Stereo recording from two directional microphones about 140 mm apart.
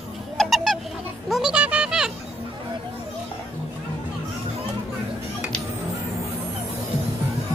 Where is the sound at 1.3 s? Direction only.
5° right (ahead or behind).